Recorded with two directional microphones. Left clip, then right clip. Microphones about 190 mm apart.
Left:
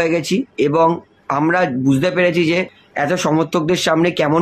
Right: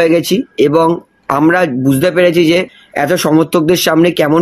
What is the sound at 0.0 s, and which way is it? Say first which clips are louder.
Speech: right 7 dB; 40° right (ahead or behind).